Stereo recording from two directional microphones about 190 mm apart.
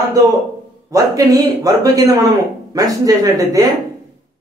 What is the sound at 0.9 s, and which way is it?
A man's voice, 20° right (ahead or behind).